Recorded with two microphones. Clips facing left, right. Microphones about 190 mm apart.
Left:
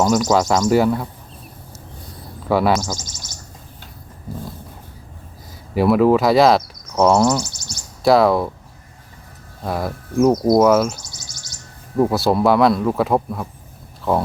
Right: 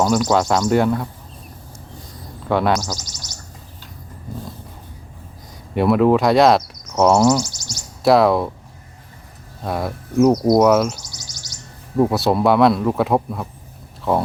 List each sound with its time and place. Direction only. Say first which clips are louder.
0.0 s speech: left 1 dB; centre (ahead or behind)
2.5 s speech: left 1 dB; 5° left (ahead or behind)
3.0 s bird: left 1 dB; 50° left (ahead or behind)
5.7 s speech: left 1 dB; centre (ahead or behind)
7.4 s bird: right 1 dB; 55° left (ahead or behind)
8.0 s speech: even; centre (ahead or behind)
9.6 s speech: even; centre (ahead or behind)
11.1 s bird: right 1 dB; 50° left (ahead or behind)
11.9 s speech: even; centre (ahead or behind)